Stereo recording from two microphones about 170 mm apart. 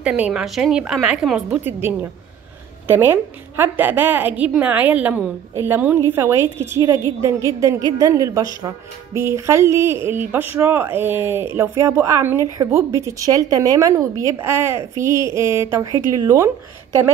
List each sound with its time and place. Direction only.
0.0 s a woman's voice: 5° right (ahead or behind)